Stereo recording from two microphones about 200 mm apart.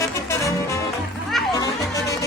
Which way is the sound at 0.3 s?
15° left (ahead or behind).